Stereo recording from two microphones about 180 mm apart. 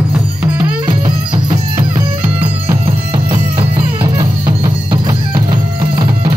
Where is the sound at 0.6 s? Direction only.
25° right (ahead or behind).